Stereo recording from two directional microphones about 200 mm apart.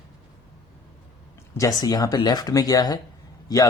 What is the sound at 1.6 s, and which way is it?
Speech, 20° left (ahead or behind).